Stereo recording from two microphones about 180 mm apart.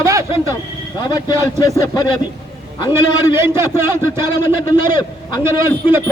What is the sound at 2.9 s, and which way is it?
A man's voice, 15° right (ahead or behind).